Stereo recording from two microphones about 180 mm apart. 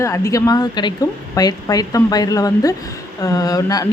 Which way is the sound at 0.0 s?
15° left (ahead or behind).